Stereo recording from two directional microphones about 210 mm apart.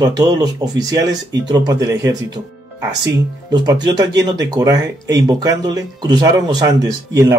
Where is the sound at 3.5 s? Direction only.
20° right (ahead or behind).